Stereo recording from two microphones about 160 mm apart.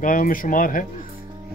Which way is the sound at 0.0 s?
60° left (ahead or behind).